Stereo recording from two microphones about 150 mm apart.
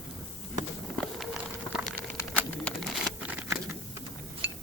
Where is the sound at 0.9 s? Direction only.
Centre (ahead or behind).